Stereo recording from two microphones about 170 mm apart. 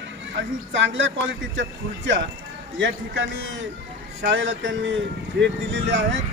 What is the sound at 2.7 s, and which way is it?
Speech, 90° right.